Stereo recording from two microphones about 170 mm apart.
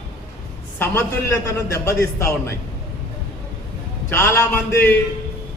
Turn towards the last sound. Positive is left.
turn(degrees=15)  # may be behind; listen again after turning